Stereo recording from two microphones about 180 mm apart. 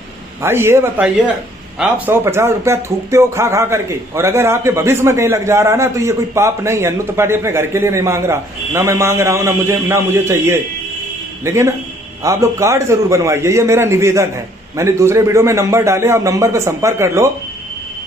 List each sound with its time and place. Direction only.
0.4 s speech: 15° right (ahead or behind)